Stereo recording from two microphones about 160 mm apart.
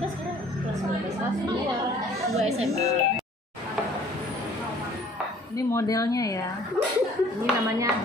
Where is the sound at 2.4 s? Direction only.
40° right (ahead or behind).